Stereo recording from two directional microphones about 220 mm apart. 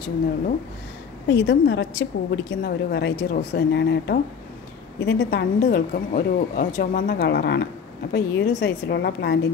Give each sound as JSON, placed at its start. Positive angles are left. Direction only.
{"t": 1.3, "sound": "a woman's voice", "side_deg": 55}